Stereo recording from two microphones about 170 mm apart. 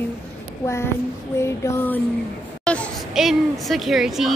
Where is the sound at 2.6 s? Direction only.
5° left (ahead or behind).